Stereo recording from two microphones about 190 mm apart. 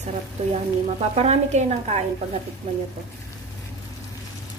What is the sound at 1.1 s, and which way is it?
A woman's voice, 35° right (ahead or behind).